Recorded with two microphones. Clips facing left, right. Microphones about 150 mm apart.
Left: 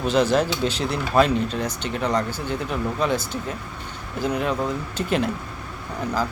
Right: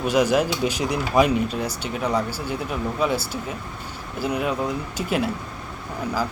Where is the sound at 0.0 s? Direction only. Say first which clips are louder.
Even; 10° right (ahead or behind).